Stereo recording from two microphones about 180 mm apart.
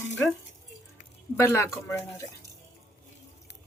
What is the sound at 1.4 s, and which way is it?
Speech, 15° left (ahead or behind).